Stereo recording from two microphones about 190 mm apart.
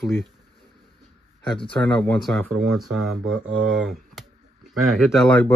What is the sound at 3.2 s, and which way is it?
Speech, 90° right.